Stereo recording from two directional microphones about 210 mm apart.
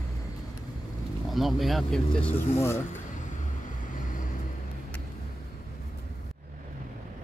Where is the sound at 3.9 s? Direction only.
40° left (ahead or behind).